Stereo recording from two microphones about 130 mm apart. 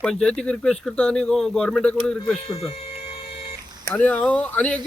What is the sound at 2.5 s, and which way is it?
Speech, 50° left (ahead or behind).